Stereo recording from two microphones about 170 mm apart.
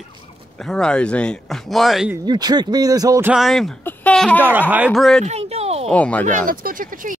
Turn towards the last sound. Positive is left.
turn(degrees=-55)  # may be behind; listen again after turning